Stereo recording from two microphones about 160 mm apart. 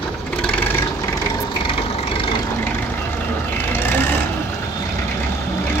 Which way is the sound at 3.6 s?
15° left (ahead or behind).